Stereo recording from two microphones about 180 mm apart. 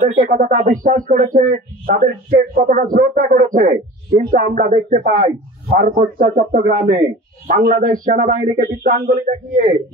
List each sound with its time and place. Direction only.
0.0 s a man's voice: 45° right (ahead or behind)